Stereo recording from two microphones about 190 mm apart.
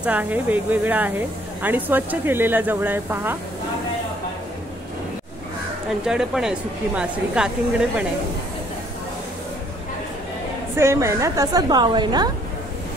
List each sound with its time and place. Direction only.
0.0 s speech: 10° right (ahead or behind)
5.9 s speech: 5° right (ahead or behind)
10.8 s a woman's voice: 15° right (ahead or behind)